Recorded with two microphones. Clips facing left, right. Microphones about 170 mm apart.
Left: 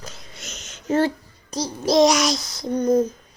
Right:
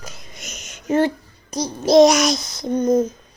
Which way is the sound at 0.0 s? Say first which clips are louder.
Right 1 dB; 15° right (ahead or behind).